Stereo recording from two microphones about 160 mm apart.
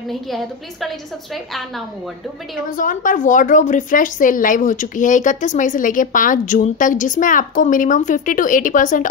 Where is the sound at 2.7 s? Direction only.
60° left (ahead or behind).